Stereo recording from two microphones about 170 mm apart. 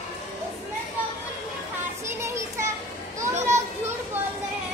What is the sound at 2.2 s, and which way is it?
Children playing, 15° right (ahead or behind).